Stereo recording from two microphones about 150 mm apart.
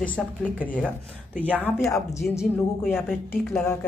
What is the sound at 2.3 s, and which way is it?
Speech, 5° right (ahead or behind).